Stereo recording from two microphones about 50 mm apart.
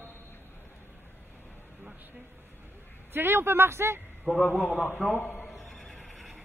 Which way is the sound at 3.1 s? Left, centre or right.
Right.